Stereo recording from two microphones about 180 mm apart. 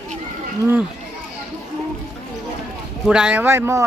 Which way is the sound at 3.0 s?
5° right (ahead or behind).